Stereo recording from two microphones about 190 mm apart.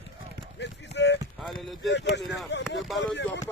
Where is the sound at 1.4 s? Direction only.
Centre (ahead or behind).